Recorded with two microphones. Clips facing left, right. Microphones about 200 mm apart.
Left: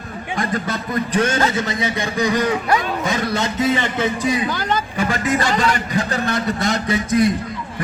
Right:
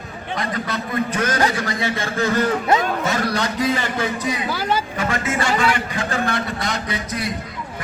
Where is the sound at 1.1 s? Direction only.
30° left (ahead or behind).